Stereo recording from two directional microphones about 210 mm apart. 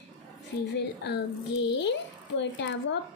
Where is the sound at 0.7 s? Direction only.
55° left (ahead or behind).